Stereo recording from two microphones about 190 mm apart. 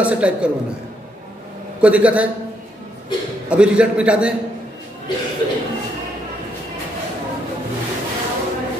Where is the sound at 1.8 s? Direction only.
5° right (ahead or behind).